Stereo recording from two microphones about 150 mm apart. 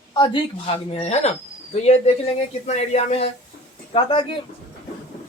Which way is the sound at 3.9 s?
30° left (ahead or behind).